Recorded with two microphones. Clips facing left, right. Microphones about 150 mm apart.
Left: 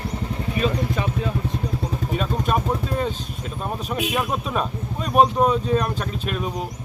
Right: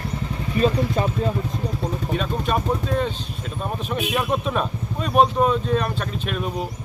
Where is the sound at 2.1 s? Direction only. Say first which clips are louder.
Left 1 dB; 5° left (ahead or behind).